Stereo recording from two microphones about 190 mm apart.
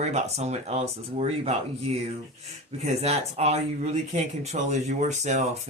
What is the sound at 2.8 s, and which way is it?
Speech, 35° right (ahead or behind).